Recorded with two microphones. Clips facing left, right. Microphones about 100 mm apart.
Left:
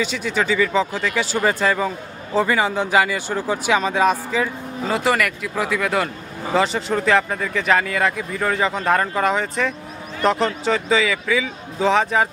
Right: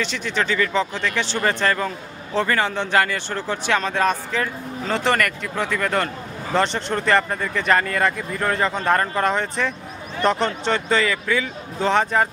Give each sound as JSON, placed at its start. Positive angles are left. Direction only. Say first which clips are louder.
{"t": 0.0, "sound": "speech", "louder": "left 2 dB", "side_deg": 5}